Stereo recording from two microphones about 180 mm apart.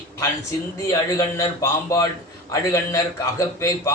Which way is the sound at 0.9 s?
15° left (ahead or behind).